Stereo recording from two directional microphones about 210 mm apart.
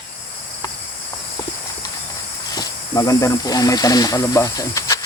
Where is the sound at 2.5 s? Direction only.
15° left (ahead or behind).